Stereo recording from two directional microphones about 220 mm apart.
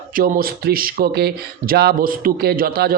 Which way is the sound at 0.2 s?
40° right (ahead or behind).